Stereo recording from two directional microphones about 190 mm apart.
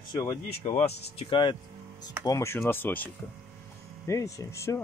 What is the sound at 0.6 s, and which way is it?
Speech, 35° left (ahead or behind).